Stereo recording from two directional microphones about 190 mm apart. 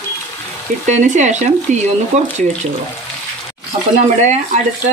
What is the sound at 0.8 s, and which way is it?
Speech, 40° right (ahead or behind).